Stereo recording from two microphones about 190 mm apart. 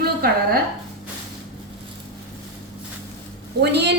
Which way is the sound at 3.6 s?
65° right (ahead or behind).